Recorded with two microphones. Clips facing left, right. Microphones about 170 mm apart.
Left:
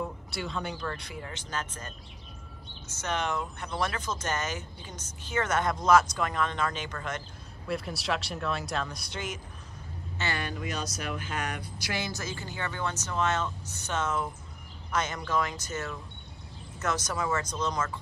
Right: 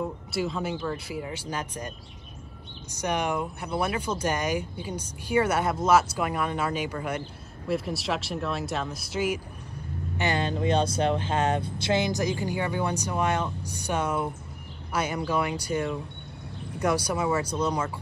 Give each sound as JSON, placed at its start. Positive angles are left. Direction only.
{"t": 0.3, "sound": "speech", "side_deg": 0}
{"t": 10.1, "sound": "speech", "side_deg": -20}